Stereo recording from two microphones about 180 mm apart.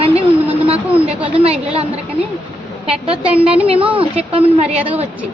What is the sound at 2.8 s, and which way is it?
A woman's voice, 35° right (ahead or behind).